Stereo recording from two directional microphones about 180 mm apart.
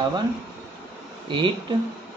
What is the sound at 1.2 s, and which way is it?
Speech, 25° right (ahead or behind).